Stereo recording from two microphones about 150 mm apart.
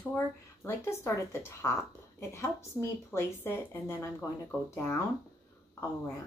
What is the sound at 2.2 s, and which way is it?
Speech, 15° left (ahead or behind).